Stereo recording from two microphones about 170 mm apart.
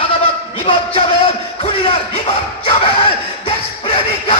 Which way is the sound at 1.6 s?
35° left (ahead or behind).